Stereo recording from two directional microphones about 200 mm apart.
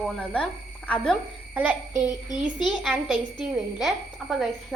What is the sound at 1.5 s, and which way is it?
Child singing, 5° right (ahead or behind).